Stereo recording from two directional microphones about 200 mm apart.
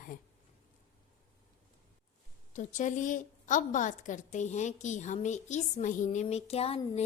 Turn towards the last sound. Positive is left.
turn(degrees=30)  # may be behind; listen again after turning